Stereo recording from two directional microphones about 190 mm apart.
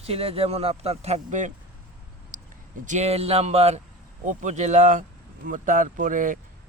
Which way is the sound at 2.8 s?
40° right (ahead or behind).